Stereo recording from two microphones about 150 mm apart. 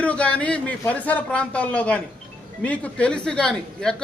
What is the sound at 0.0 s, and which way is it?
A man's voice, 10° left (ahead or behind).